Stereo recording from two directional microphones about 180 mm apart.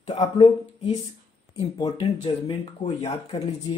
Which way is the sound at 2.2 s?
35° left (ahead or behind).